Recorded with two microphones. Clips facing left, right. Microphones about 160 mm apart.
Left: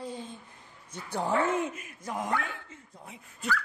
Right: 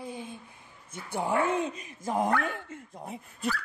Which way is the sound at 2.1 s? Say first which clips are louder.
Right 5 dB; 45° right (ahead or behind).